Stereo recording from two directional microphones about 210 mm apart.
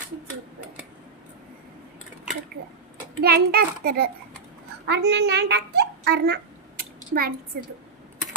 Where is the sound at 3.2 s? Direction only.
45° right (ahead or behind).